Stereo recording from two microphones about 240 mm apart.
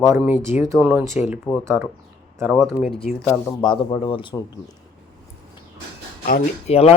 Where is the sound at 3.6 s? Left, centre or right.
Centre.